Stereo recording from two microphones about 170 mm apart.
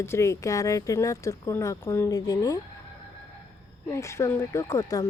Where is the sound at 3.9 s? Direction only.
15° left (ahead or behind).